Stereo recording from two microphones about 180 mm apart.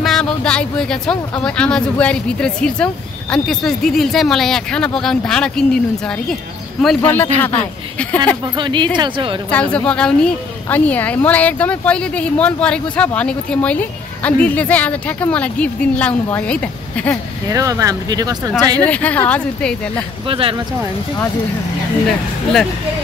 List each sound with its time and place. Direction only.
0.0 s a woman's voice: 5° left (ahead or behind)
8.5 s speech: 25° right (ahead or behind)
9.5 s a woman's voice: 5° left (ahead or behind)
17.5 s speech: 20° right (ahead or behind)
18.9 s a woman's voice: 10° left (ahead or behind)
20.2 s speech: 30° right (ahead or behind)